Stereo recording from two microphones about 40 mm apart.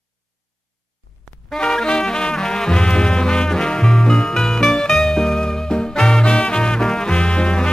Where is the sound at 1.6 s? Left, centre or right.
Centre.